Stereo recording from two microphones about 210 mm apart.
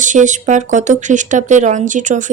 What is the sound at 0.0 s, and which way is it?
Speech, 35° right (ahead or behind).